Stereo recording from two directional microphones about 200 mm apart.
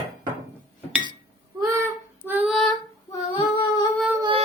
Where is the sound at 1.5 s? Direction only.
10° right (ahead or behind).